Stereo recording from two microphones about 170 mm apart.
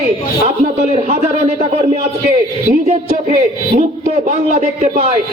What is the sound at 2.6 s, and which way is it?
A man's voice, 45° right (ahead or behind).